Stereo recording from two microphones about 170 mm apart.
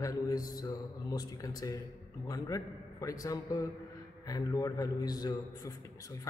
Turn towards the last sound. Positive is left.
turn(degrees=20)  # may be behind; listen again after turning